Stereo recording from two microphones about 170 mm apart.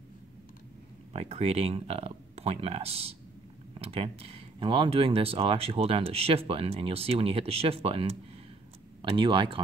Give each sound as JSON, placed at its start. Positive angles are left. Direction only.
{"t": 1.1, "sound": "speech", "side_deg": -35}